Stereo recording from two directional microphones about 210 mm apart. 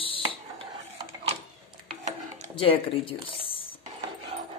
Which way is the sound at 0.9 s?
25° right (ahead or behind).